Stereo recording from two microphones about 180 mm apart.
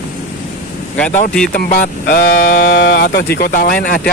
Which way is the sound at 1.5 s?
50° left (ahead or behind).